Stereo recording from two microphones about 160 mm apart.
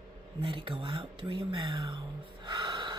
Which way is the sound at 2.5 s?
25° right (ahead or behind).